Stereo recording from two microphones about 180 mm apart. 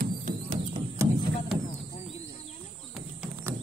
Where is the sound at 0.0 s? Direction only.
45° right (ahead or behind).